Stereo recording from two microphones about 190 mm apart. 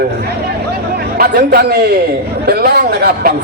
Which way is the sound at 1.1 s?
50° right (ahead or behind).